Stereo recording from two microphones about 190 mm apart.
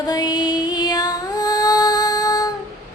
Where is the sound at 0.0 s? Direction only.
20° left (ahead or behind).